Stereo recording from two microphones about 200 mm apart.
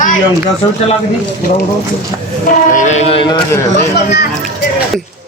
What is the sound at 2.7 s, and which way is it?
Speech, 35° left (ahead or behind).